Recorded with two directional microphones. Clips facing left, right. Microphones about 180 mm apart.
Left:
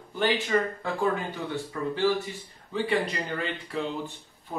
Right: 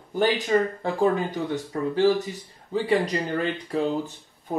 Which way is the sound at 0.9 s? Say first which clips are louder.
Right 5 dB; 40° right (ahead or behind).